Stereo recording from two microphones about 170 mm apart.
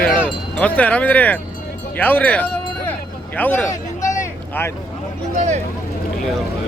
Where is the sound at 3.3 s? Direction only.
10° left (ahead or behind).